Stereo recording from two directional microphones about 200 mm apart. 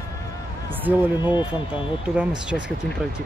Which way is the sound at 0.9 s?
10° right (ahead or behind).